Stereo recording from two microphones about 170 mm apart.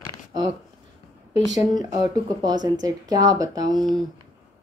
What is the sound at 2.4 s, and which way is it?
Speech, 25° right (ahead or behind).